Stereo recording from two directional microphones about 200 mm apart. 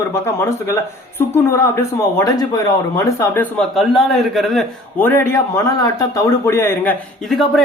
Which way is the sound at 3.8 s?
Centre (ahead or behind).